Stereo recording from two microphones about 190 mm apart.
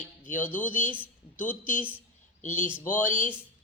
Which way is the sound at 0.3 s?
10° left (ahead or behind).